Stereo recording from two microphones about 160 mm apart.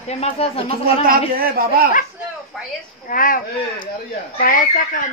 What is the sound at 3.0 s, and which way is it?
A woman's voice, 60° left (ahead or behind).